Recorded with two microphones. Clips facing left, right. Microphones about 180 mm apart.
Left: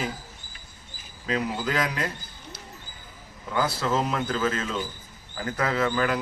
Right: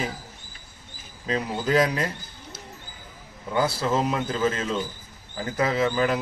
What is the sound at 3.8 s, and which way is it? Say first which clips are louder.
Speech: right 2 dB; 10° right (ahead or behind).